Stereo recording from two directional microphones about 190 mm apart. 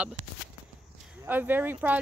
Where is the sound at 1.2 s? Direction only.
10° right (ahead or behind).